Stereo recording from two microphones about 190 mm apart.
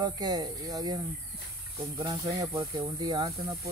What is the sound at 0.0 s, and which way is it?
Speech, 20° right (ahead or behind).